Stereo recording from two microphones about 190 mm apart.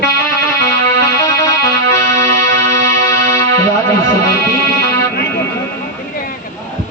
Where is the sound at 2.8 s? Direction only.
15° left (ahead or behind).